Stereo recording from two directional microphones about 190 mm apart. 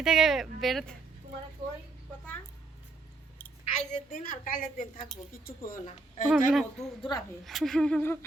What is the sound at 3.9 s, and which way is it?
A woman's voice, 45° left (ahead or behind).